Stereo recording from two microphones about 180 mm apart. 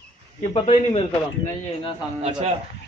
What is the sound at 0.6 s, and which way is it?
Speech, 30° left (ahead or behind).